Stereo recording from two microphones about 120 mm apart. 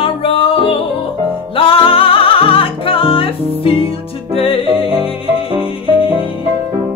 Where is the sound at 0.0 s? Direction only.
50° left (ahead or behind).